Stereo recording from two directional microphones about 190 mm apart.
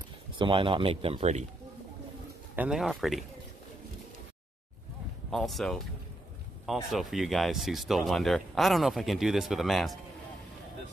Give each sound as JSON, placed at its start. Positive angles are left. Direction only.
{"t": 0.4, "sound": "speech", "side_deg": -25}
{"t": 2.5, "sound": "speech", "side_deg": -5}
{"t": 5.3, "sound": "speech", "side_deg": 0}
{"t": 6.9, "sound": "speech", "side_deg": 0}